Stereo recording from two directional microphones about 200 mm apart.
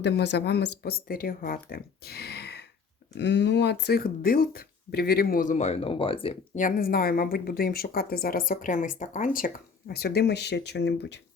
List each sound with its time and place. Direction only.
0.0 s speech: 60° left (ahead or behind); by 6.3 s 25° left (ahead or behind)
6.6 s speech: 45° left (ahead or behind)
9.9 s speech: 50° left (ahead or behind)